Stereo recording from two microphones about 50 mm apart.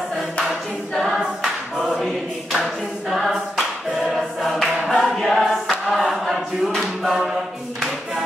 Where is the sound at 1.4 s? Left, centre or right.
Centre.